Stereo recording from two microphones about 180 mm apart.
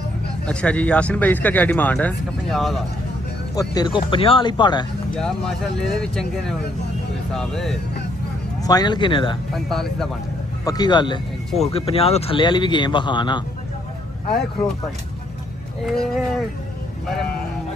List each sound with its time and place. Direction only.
0.5 s speech: 5° left (ahead or behind)
3.5 s speech: 20° left (ahead or behind)
5.1 s speech: 5° left (ahead or behind)
7.3 s speech: centre (ahead or behind)
8.6 s speech: 25° left (ahead or behind)
9.5 s speech: centre (ahead or behind)
10.6 s speech: 20° left (ahead or behind)
15.9 s speech: centre (ahead or behind)